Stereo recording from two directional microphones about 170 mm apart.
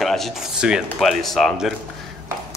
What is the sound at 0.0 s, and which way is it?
Speech, centre (ahead or behind).